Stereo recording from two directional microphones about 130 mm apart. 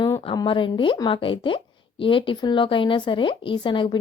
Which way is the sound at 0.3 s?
40° left (ahead or behind).